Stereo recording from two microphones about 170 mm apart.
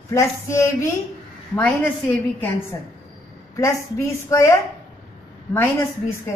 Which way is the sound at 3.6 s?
15° left (ahead or behind).